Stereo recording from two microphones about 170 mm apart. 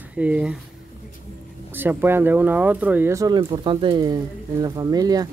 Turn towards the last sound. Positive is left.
turn(degrees=-20)  # may be behind; listen again after turning